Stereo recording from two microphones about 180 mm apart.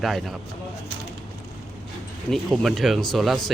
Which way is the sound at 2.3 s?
Centre (ahead or behind).